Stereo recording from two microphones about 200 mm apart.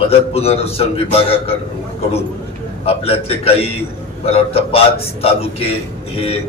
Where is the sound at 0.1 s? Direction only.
30° left (ahead or behind).